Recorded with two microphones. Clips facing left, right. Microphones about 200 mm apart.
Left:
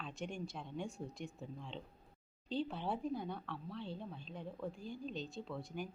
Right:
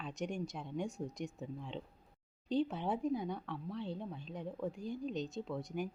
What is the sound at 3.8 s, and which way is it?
Speech, 20° right (ahead or behind).